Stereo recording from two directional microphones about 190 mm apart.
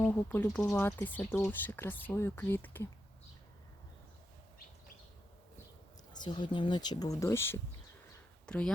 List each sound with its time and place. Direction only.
0.0 s speech: 5° left (ahead or behind)
6.1 s speech: 25° left (ahead or behind); by 8.7 s 5° left (ahead or behind)